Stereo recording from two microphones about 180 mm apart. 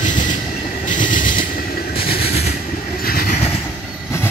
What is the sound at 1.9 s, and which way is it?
Train, 55° left (ahead or behind).